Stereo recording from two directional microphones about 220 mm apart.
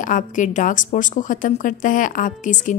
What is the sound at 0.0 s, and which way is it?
A woman's voice, 35° left (ahead or behind).